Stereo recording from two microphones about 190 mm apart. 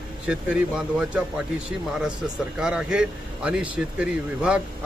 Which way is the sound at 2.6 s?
5° right (ahead or behind).